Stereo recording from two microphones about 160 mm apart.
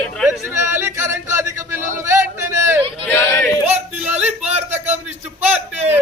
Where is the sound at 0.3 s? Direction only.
15° right (ahead or behind).